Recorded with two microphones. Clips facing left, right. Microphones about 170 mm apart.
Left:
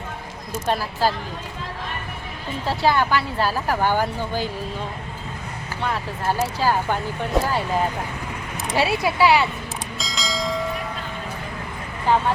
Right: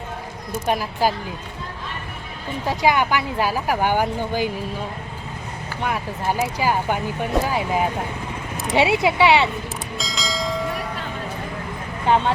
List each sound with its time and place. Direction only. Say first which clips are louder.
0.7 s speech: right 1 dB; 15° right (ahead or behind)
2.6 s speech: right 1 dB; 15° right (ahead or behind)
6.4 s speech: even; 15° right (ahead or behind)
10.0 s bell: even; centre (ahead or behind)
12.0 s speech: right 1 dB; 20° right (ahead or behind)